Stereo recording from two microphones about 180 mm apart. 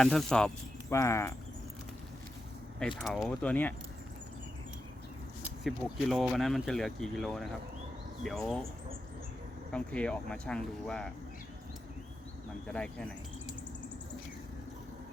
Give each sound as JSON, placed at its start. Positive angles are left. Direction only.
{"t": 0.0, "sound": "speech", "side_deg": 5}
{"t": 0.9, "sound": "speech", "side_deg": 15}
{"t": 3.0, "sound": "speech", "side_deg": 0}
{"t": 5.6, "sound": "speech", "side_deg": 0}
{"t": 9.7, "sound": "speech", "side_deg": 5}
{"t": 12.6, "sound": "speech", "side_deg": 5}